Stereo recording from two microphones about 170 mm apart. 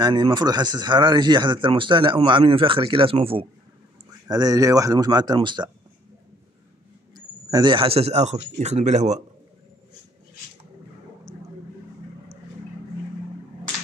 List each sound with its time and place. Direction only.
0.0 s speech: 25° right (ahead or behind)
4.3 s speech: 20° right (ahead or behind)
7.2 s speech: 25° right (ahead or behind); by 9.2 s 40° right (ahead or behind)